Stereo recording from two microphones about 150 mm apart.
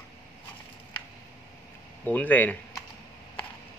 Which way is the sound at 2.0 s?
10° left (ahead or behind).